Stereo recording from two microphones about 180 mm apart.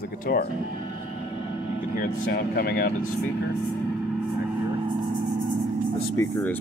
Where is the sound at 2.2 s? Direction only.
60° left (ahead or behind).